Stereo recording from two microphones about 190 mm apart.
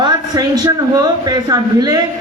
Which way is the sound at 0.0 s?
20° right (ahead or behind).